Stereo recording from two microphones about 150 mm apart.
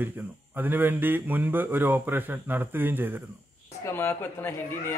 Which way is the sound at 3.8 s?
15° left (ahead or behind).